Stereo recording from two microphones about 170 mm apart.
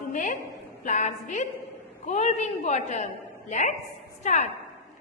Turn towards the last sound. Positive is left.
turn(degrees=45)  # may be behind; listen again after turning